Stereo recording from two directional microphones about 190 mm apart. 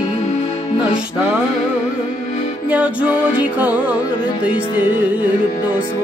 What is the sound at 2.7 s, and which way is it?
Music, 5° right (ahead or behind).